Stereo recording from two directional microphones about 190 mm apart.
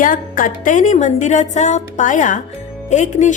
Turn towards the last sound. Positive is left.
turn(degrees=40)  # may be behind; listen again after turning